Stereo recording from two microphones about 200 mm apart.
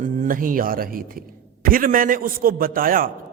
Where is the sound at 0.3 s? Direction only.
45° right (ahead or behind).